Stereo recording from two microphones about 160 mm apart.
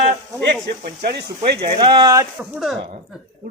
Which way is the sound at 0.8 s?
85° right.